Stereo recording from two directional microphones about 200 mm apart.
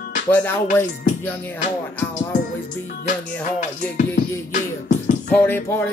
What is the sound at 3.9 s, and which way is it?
Music, 40° left (ahead or behind).